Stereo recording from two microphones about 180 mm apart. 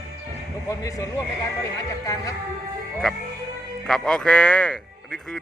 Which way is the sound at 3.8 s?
Centre (ahead or behind).